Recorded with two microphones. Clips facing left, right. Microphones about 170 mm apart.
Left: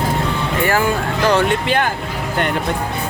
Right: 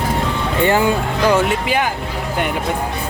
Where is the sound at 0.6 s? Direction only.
20° right (ahead or behind).